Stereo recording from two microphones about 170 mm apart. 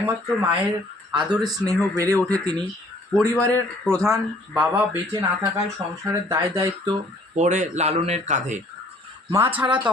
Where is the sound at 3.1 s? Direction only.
5° left (ahead or behind).